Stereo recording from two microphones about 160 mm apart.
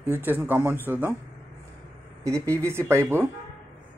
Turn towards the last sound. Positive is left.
turn(degrees=-15)  # may be behind; listen again after turning